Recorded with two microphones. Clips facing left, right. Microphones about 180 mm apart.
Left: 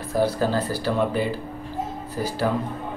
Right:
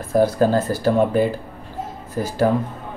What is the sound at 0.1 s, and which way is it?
Speech, 50° right (ahead or behind).